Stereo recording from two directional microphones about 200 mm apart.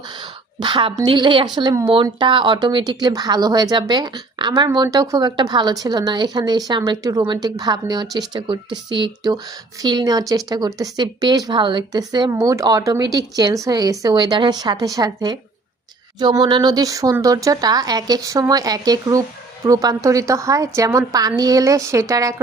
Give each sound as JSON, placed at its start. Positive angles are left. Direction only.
{"t": 0.2, "sound": "a woman's voice", "side_deg": -25}